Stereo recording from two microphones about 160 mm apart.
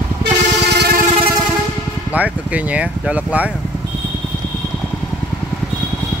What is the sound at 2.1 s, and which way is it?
Speech, 10° right (ahead or behind).